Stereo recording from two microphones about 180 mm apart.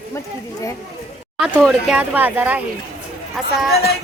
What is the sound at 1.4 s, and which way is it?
A man's voice, centre (ahead or behind).